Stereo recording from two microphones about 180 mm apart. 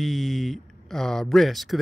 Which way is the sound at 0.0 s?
Centre (ahead or behind).